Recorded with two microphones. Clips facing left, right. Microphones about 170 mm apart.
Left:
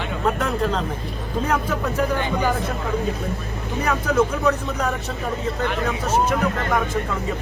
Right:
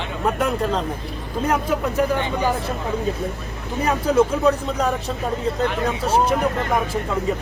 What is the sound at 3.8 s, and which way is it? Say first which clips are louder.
Speech: right 2 dB; 30° right (ahead or behind).